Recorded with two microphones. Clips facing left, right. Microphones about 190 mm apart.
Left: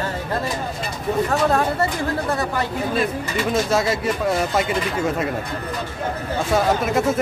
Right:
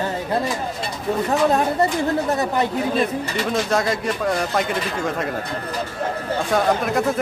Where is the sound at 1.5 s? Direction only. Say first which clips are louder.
Right 1 dB; 20° right (ahead or behind).